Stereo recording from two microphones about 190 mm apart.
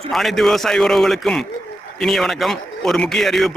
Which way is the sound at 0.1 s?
Centre (ahead or behind).